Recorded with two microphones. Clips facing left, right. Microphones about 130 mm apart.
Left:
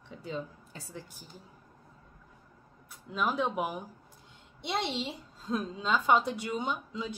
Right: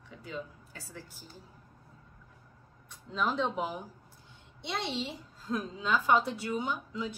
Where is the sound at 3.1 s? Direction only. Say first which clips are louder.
Left 1 dB; 10° left (ahead or behind).